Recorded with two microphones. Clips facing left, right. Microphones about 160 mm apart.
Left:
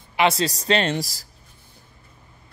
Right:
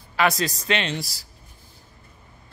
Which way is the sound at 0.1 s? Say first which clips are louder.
Left 2 dB; 25° left (ahead or behind).